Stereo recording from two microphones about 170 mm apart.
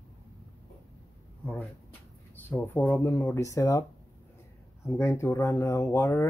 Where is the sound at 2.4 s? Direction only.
10° left (ahead or behind).